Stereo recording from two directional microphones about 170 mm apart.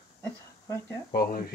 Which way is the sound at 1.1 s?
55° left (ahead or behind).